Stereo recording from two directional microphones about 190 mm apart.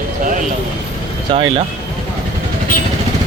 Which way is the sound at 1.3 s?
30° right (ahead or behind).